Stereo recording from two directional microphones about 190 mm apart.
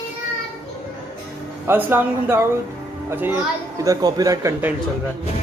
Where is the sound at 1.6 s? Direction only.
10° right (ahead or behind).